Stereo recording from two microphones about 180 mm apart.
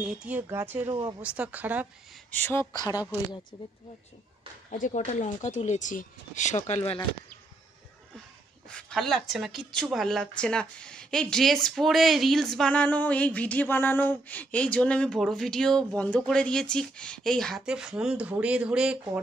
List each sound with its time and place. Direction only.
0.0 s a woman's voice: 5° right (ahead or behind)
2.3 s speech: 10° left (ahead or behind)
2.6 s speech: 20° right (ahead or behind)
4.6 s speech: 45° left (ahead or behind)
8.6 s a woman's voice: 5° left (ahead or behind)